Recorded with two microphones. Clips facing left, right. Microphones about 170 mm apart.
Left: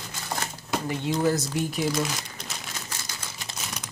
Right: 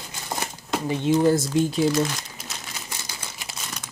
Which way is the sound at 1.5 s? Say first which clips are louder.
Right 6 dB; 25° right (ahead or behind).